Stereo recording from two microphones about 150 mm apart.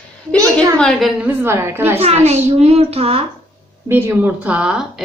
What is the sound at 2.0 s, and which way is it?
A child's voice, 45° right (ahead or behind).